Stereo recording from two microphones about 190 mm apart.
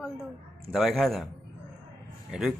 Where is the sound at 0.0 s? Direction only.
Centre (ahead or behind).